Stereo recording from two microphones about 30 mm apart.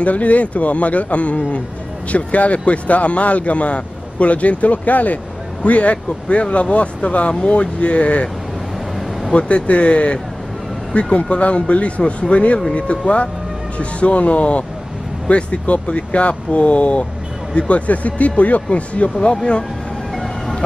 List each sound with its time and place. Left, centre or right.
0.0 s speech: left
5.6 s speech: left
9.3 s speech: left